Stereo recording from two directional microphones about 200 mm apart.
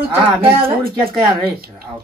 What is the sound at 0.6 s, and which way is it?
Speech, 50° right (ahead or behind).